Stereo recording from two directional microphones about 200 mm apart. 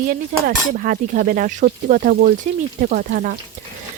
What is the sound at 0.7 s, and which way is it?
Speech, 45° right (ahead or behind).